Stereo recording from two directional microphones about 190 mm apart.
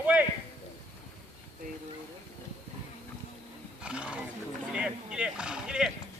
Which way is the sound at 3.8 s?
5° right (ahead or behind).